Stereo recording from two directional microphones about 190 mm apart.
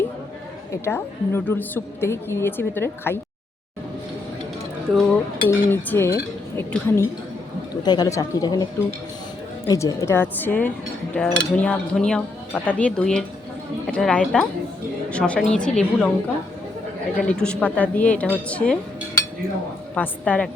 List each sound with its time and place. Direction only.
0.9 s a woman's voice: 10° left (ahead or behind)
5.5 s a woman's voice: 15° left (ahead or behind)
9.6 s a woman's voice: 15° left (ahead or behind)
17.2 s a woman's voice: 5° left (ahead or behind)
20.0 s a woman's voice: 5° left (ahead or behind)